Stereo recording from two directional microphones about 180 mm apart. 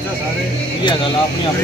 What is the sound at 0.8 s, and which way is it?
Speech, 25° left (ahead or behind).